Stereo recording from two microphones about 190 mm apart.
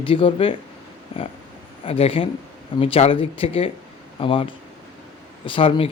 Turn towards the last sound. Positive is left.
turn(degrees=30)  # may be behind; listen again after turning